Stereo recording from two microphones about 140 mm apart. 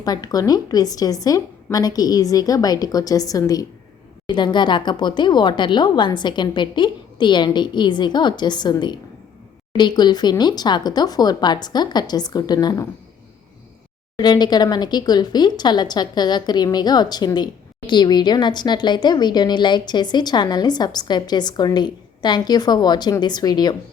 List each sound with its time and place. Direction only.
0.0 s a woman's voice: 25° left (ahead or behind)
14.2 s a woman's voice: 30° left (ahead or behind)